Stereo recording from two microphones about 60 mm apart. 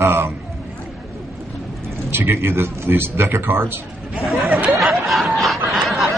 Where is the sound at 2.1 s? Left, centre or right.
Right.